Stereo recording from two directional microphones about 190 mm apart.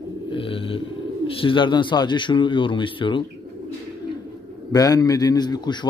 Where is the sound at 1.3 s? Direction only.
30° left (ahead or behind).